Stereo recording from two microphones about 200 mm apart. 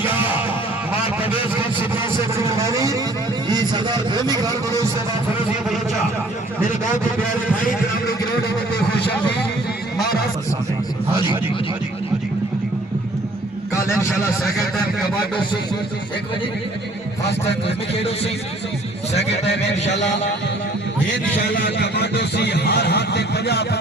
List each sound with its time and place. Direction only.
0.0 s music: 10° right (ahead or behind)
2.0 s a sound: 15° right (ahead or behind)
3.5 s speech: 20° right (ahead or behind)
21.5 s speech: 55° left (ahead or behind)